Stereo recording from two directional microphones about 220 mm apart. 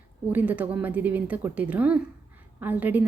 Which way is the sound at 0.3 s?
10° right (ahead or behind).